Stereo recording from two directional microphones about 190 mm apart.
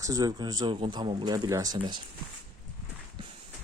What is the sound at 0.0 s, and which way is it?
Speech, 20° right (ahead or behind).